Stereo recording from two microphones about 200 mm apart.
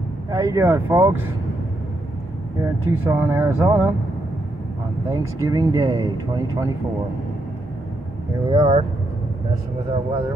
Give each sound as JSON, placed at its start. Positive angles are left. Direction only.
{"t": 0.3, "sound": "speech", "side_deg": -15}
{"t": 2.6, "sound": "speech", "side_deg": -10}
{"t": 5.1, "sound": "speech", "side_deg": -15}
{"t": 8.5, "sound": "speech", "side_deg": -20}